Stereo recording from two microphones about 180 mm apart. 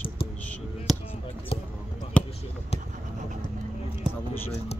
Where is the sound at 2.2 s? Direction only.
5° left (ahead or behind).